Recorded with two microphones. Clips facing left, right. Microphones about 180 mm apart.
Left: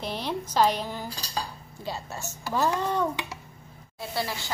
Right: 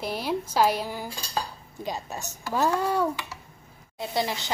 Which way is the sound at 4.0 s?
20° right (ahead or behind).